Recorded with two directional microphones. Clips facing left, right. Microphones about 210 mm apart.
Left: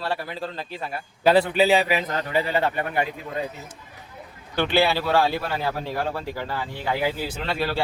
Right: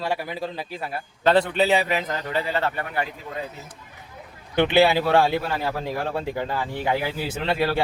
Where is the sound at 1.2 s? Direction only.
5° left (ahead or behind).